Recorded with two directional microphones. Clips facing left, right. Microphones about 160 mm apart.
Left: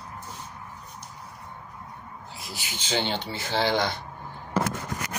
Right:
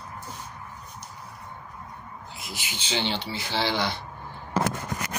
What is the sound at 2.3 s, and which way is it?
Speech, 40° left (ahead or behind).